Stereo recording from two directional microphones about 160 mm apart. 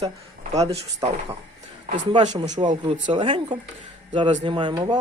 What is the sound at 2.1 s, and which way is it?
Speech, 25° right (ahead or behind).